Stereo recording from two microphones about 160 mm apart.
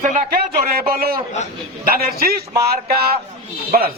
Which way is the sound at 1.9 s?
70° right (ahead or behind).